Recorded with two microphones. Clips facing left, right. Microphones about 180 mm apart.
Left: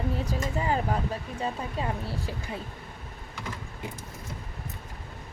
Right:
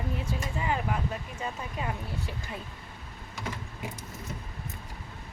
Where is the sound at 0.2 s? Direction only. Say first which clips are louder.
Left 4 dB; 40° left (ahead or behind).